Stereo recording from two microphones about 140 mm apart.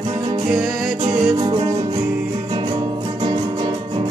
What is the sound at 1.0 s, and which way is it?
Music, 30° right (ahead or behind).